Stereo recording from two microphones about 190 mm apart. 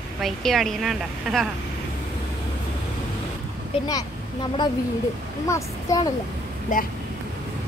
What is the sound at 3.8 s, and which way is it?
A child's voice, 20° left (ahead or behind).